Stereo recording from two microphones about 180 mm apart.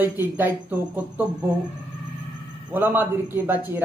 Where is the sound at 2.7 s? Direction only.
10° right (ahead or behind).